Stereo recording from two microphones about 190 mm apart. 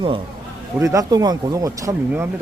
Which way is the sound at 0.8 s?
15° right (ahead or behind).